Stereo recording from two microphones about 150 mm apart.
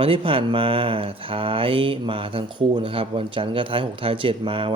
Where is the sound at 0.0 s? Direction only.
35° right (ahead or behind).